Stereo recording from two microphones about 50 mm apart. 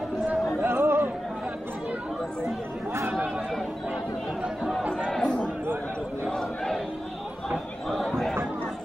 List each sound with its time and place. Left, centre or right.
0.6 s chatter: right
4.9 s chatter: centre
6.3 s a sound: centre
7.9 s chatter: centre